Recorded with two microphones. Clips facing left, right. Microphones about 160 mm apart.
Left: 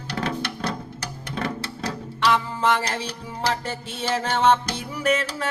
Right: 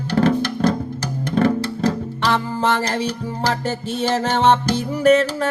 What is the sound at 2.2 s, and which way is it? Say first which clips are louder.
Music: right 2 dB; 30° right (ahead or behind).